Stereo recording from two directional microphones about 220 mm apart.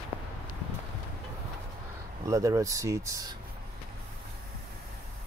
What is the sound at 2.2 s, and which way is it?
Speech, 15° right (ahead or behind).